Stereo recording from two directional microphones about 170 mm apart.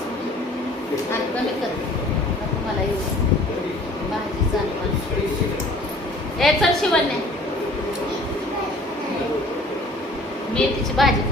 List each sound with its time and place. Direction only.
6.4 s a woman's voice: centre (ahead or behind)
10.5 s a woman's voice: centre (ahead or behind)